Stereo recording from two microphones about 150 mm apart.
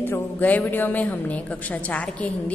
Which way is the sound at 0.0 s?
10° left (ahead or behind).